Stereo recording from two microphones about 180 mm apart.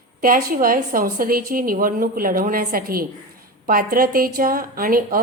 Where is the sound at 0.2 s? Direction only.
55° right (ahead or behind).